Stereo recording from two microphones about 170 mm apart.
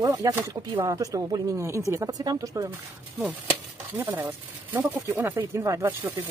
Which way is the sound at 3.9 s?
10° right (ahead or behind).